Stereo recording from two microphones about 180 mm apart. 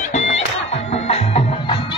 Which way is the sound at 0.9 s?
35° left (ahead or behind).